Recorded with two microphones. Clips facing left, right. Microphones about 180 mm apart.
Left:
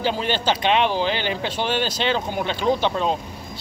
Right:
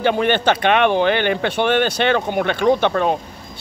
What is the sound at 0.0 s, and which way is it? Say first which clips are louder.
Speech: right 6 dB; 60° right (ahead or behind).